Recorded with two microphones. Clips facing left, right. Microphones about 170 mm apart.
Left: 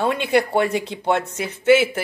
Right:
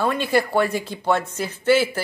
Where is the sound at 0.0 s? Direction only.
20° left (ahead or behind).